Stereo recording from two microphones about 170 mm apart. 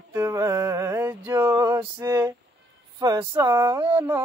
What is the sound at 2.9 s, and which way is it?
Speech, 20° right (ahead or behind).